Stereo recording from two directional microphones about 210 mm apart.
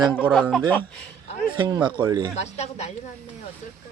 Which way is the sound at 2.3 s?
30° left (ahead or behind).